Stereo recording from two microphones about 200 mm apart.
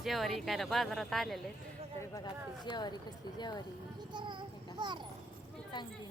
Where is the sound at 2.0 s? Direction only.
20° left (ahead or behind).